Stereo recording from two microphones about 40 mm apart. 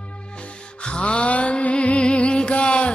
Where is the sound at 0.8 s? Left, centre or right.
Left.